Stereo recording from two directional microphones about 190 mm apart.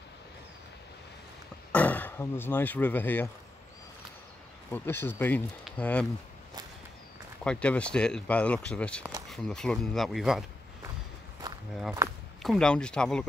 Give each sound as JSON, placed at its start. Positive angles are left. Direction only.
{"t": 1.7, "sound": "speech", "side_deg": 10}
{"t": 4.6, "sound": "speech", "side_deg": 10}
{"t": 7.4, "sound": "speech", "side_deg": 5}
{"t": 12.0, "sound": "speech", "side_deg": -15}
{"t": 12.4, "sound": "speech", "side_deg": 0}